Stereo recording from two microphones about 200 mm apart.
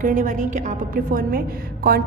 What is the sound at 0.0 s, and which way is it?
A woman's voice, 40° right (ahead or behind).